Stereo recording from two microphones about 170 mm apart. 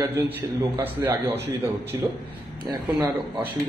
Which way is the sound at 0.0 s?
10° right (ahead or behind).